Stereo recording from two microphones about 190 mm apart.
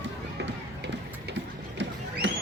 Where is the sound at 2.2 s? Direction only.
70° right (ahead or behind).